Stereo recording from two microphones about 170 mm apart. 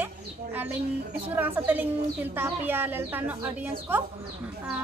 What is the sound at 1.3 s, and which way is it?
Speech, 10° right (ahead or behind).